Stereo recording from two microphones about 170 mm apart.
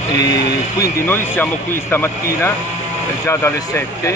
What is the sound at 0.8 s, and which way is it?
Speech, 15° left (ahead or behind).